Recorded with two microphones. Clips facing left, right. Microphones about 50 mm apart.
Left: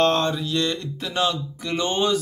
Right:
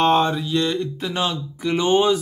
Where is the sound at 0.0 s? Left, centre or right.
Centre.